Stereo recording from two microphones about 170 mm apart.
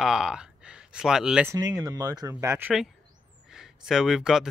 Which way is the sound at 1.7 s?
20° right (ahead or behind).